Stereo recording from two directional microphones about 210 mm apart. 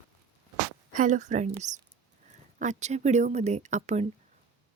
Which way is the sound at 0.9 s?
35° right (ahead or behind).